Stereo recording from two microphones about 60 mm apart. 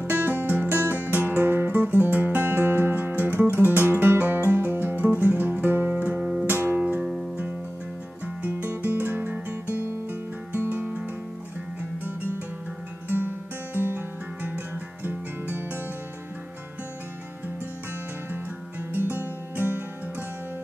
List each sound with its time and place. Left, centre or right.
0.0 s music: right
5.9 s music: right
6.4 s music: right
6.8 s music: right
8.4 s guitar: right
9.8 s guitar: right
13.7 s guitar: right
18.3 s music: right